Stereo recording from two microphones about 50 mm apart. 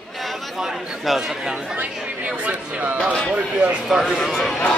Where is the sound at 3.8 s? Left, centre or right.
Centre.